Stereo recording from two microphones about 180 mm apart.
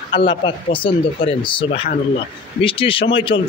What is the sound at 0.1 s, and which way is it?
A man's voice, 30° left (ahead or behind).